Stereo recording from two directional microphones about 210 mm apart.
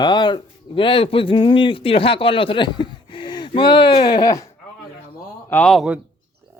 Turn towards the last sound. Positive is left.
turn(degrees=-5)  # may be behind; listen again after turning